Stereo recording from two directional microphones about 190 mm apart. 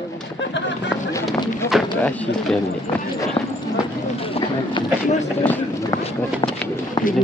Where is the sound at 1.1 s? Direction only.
15° left (ahead or behind).